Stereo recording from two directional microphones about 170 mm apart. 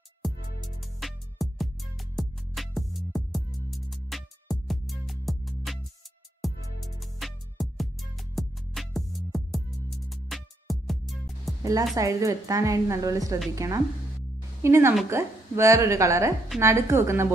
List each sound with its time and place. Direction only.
0.2 s music: centre (ahead or behind)
11.6 s a woman's voice: 20° right (ahead or behind)